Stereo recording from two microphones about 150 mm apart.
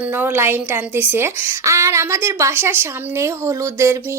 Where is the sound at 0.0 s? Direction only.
15° right (ahead or behind).